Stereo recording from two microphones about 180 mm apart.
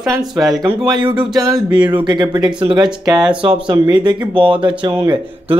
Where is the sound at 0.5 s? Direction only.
20° right (ahead or behind).